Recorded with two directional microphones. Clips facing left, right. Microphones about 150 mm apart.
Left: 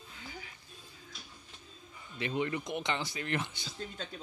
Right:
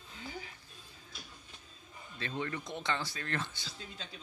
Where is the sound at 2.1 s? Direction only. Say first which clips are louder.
Left 5 dB; 15° left (ahead or behind).